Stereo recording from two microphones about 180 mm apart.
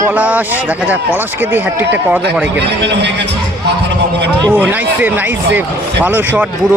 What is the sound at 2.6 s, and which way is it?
Speech, 70° right (ahead or behind).